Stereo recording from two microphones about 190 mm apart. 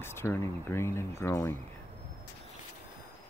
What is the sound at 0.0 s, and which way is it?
Speech, 10° left (ahead or behind).